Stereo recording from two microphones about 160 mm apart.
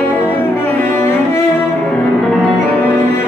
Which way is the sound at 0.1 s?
10° left (ahead or behind).